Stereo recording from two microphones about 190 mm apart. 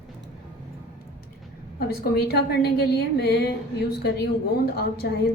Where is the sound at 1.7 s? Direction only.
55° left (ahead or behind).